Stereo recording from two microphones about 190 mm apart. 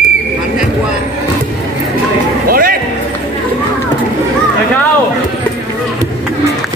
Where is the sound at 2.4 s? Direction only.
50° right (ahead or behind).